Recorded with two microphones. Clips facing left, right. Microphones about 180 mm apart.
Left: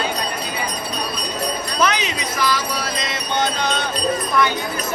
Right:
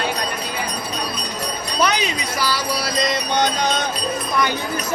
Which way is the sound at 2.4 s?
35° right (ahead or behind).